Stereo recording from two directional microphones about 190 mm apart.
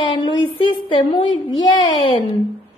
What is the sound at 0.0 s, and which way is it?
A woman's voice, 25° left (ahead or behind).